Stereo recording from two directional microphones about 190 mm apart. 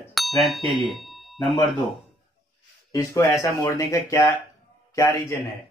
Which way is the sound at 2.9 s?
15° left (ahead or behind).